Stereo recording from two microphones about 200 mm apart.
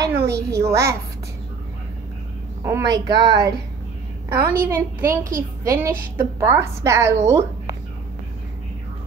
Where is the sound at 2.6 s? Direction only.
15° right (ahead or behind).